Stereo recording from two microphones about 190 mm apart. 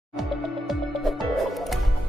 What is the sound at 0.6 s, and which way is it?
Music, centre (ahead or behind).